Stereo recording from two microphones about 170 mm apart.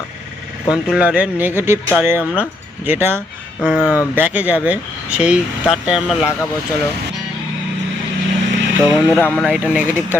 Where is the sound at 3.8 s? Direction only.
20° left (ahead or behind).